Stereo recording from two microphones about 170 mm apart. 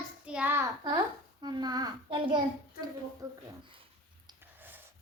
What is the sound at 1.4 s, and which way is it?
A child's voice, 25° right (ahead or behind).